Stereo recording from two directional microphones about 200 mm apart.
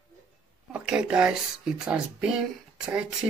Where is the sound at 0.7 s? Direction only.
5° right (ahead or behind).